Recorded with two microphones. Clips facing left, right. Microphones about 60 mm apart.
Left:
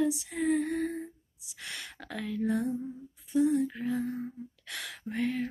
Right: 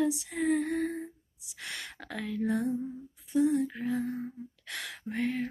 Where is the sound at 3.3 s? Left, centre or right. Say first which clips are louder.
Even; right.